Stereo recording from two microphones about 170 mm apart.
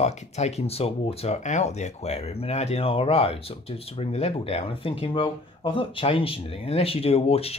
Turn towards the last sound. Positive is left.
turn(degrees=35)  # may be behind; listen again after turning